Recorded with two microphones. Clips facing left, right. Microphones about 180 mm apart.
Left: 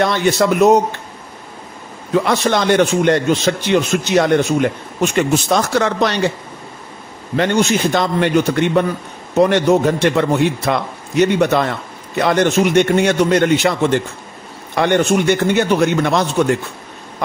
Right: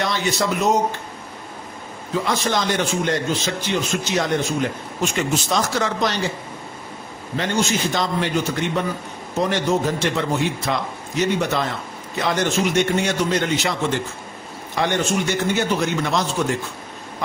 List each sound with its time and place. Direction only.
0.0 s a man's voice: 55° left (ahead or behind)
2.1 s a man's voice: 65° left (ahead or behind)
7.3 s a man's voice: 65° left (ahead or behind)